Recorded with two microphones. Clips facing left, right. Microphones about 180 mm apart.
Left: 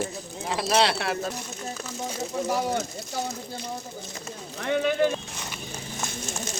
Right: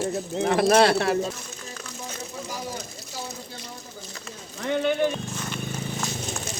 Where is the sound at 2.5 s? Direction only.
70° left (ahead or behind).